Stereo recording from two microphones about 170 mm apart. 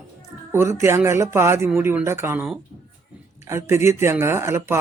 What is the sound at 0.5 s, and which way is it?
Speech, 15° right (ahead or behind).